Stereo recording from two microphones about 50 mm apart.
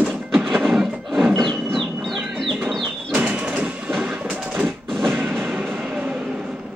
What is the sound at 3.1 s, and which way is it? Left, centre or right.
Bird, right.